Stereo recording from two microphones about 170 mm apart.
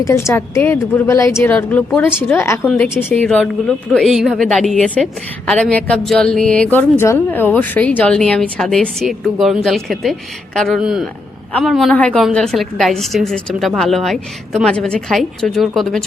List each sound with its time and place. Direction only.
0.0 s a woman's voice: 15° left (ahead or behind); by 16.0 s centre (ahead or behind)